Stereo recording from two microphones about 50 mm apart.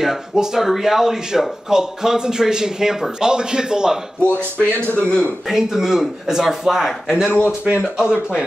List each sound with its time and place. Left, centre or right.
0.0 s speech: centre
4.2 s speech: left
5.5 s speech: centre
7.2 s speech: left
7.6 s speech: centre